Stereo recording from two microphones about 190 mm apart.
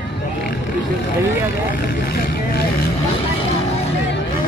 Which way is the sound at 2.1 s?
55° left (ahead or behind).